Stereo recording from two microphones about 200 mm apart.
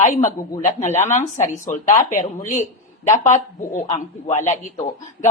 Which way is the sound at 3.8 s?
20° left (ahead or behind).